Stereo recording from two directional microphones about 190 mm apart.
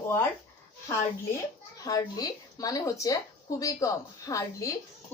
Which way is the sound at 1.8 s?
20° left (ahead or behind).